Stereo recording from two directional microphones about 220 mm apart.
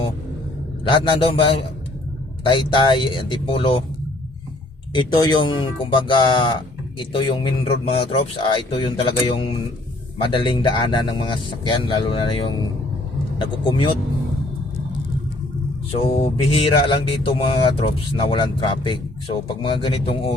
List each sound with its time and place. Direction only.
0.9 s speech: 25° left (ahead or behind)
4.9 s speech: 20° left (ahead or behind)
15.9 s speech: 25° left (ahead or behind)